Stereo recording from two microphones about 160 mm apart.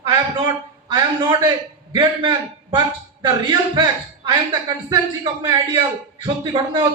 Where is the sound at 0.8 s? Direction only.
30° right (ahead or behind).